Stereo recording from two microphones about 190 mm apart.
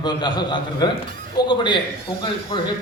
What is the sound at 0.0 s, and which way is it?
A woman's voice, 25° left (ahead or behind).